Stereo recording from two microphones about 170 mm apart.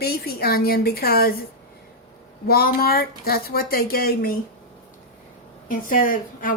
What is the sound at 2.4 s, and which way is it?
A woman's voice, 65° left (ahead or behind).